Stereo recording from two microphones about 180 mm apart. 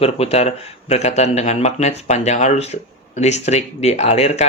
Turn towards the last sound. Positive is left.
turn(degrees=40)  # may be behind; listen again after turning